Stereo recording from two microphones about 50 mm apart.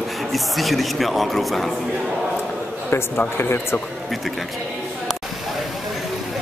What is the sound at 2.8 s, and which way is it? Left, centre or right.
Speech, left.